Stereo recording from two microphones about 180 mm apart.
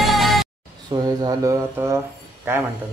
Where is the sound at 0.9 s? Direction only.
20° right (ahead or behind).